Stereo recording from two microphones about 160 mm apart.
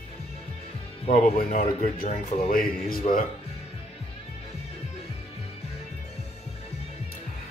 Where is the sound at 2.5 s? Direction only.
60° left (ahead or behind).